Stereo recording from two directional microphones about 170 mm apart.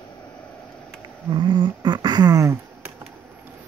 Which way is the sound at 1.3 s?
30° right (ahead or behind).